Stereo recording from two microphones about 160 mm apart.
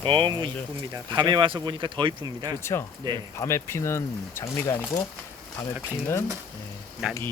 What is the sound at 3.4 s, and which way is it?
Speech, 15° left (ahead or behind).